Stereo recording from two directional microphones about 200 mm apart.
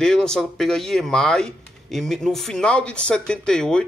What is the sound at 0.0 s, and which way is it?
Speech, 5° left (ahead or behind).